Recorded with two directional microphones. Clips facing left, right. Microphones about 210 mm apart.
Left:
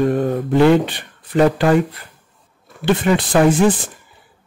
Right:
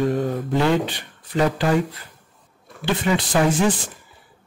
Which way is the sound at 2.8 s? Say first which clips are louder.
Left 5 dB; 55° left (ahead or behind).